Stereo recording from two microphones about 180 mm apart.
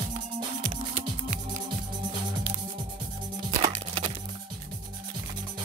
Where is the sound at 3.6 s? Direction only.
35° right (ahead or behind).